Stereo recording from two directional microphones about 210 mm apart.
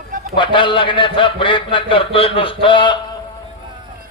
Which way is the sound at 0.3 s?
25° left (ahead or behind).